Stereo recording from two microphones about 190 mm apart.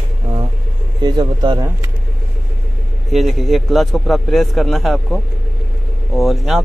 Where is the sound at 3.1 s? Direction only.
Centre (ahead or behind).